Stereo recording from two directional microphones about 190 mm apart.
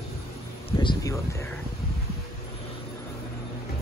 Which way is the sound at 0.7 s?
20° left (ahead or behind).